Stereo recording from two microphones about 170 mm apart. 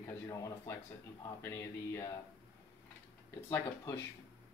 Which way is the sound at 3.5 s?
15° left (ahead or behind).